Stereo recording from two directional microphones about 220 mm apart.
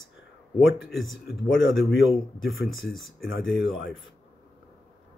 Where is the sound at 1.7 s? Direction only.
Centre (ahead or behind).